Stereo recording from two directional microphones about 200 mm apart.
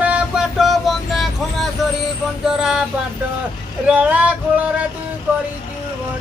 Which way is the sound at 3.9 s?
5° right (ahead or behind).